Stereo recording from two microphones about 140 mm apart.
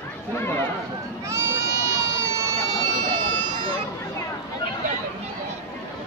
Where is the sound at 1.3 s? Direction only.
20° right (ahead or behind); by 3.7 s 35° right (ahead or behind).